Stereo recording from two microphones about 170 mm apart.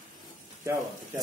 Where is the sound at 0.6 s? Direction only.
20° right (ahead or behind).